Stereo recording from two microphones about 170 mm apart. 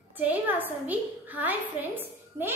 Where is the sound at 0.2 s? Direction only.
10° right (ahead or behind).